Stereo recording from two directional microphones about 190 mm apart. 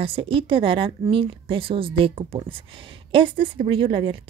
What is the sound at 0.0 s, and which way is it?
Speech, 30° right (ahead or behind).